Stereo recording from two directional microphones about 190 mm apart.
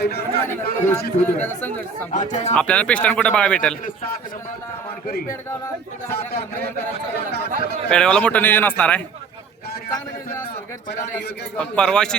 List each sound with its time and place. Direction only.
0.0 s speech: 60° left (ahead or behind)
0.4 s speech: 10° left (ahead or behind)
2.3 s speech: 35° left (ahead or behind)
2.6 s speech: 5° left (ahead or behind)
6.1 s a man's voice: 55° left (ahead or behind)
7.9 s speech: 5° left (ahead or behind)
11.5 s speech: 5° left (ahead or behind)